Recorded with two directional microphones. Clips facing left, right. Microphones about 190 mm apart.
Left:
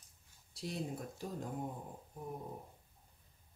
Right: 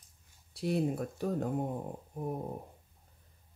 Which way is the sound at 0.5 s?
60° right (ahead or behind).